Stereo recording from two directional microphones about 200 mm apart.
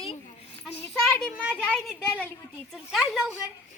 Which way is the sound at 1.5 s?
5° left (ahead or behind).